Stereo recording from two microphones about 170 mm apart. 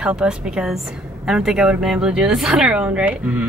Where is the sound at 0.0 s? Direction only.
5° right (ahead or behind).